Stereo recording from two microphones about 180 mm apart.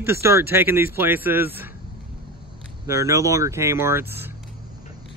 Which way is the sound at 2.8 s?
15° right (ahead or behind).